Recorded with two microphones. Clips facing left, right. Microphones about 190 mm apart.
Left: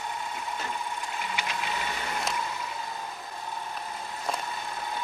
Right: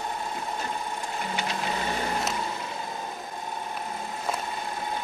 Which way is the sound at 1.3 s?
35° right (ahead or behind).